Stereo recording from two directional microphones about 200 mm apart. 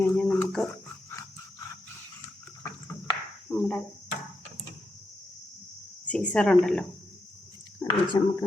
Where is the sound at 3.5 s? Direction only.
5° left (ahead or behind).